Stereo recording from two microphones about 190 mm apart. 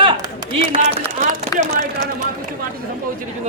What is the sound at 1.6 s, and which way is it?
Speech, 40° right (ahead or behind).